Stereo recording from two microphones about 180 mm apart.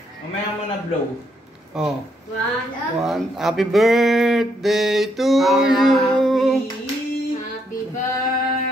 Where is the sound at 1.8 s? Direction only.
5° right (ahead or behind).